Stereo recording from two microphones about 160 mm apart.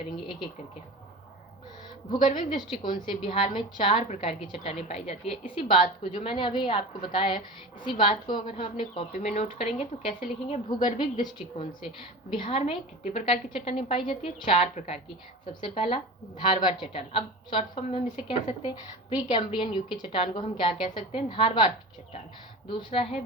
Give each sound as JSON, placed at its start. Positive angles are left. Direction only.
{"t": 2.0, "sound": "a woman's voice", "side_deg": 30}
{"t": 12.3, "sound": "a woman's voice", "side_deg": 35}
{"t": 22.7, "sound": "a woman's voice", "side_deg": 35}